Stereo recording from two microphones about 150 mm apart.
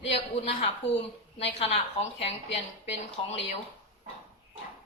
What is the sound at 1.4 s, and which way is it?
A woman's voice, 40° left (ahead or behind).